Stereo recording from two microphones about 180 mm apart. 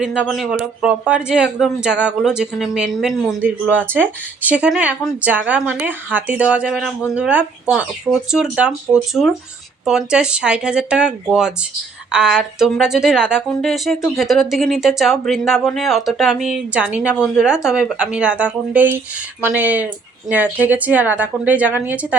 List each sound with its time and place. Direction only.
0.2 s a man's voice: centre (ahead or behind)